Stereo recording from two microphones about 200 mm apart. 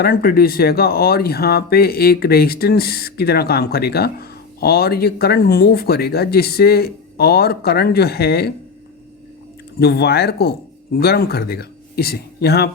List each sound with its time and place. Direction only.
0.0 s speech: 50° left (ahead or behind)
9.8 s speech: 55° left (ahead or behind)